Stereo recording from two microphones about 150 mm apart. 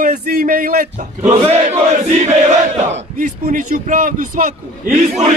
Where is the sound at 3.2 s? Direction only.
65° right (ahead or behind).